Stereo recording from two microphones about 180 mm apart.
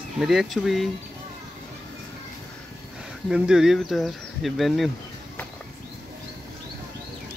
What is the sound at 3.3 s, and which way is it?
Speech, 5° right (ahead or behind).